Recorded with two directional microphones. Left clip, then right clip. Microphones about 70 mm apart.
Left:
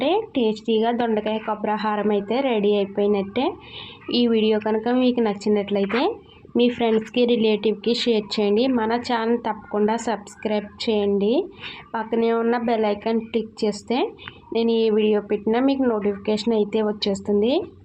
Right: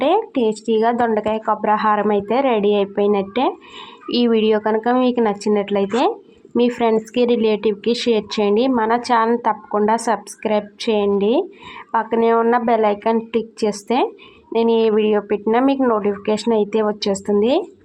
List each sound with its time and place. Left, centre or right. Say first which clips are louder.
0.3 s a woman's voice: right 3 dB; right
6.6 s a woman's voice: right 3 dB; centre; by 15.8 s right
15.8 s speech: right 5 dB; centre
16.0 s a woman's voice: right 4 dB; right